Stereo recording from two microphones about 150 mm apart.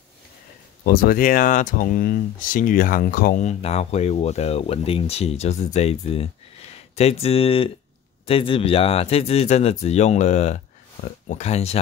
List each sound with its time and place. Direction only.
0.8 s speech: 80° left
3.4 s speech: 45° left (ahead or behind)